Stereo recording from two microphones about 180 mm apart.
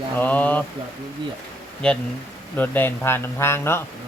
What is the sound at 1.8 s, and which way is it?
A man's voice, 5° left (ahead or behind).